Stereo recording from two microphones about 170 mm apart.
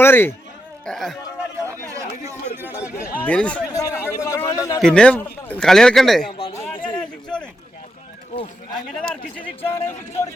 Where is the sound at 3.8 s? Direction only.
20° left (ahead or behind).